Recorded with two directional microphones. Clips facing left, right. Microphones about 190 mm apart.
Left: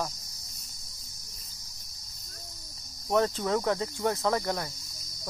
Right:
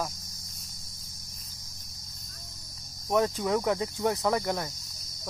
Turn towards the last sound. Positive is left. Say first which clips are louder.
# right 1 dB
turn(degrees=-15)  # may be behind; listen again after turning